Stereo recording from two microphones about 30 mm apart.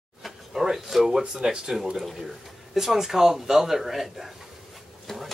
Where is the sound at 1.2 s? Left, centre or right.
Right.